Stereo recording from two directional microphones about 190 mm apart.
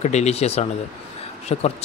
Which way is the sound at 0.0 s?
35° left (ahead or behind).